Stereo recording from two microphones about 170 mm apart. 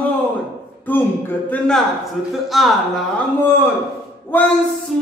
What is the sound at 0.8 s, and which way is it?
Speech, 10° left (ahead or behind).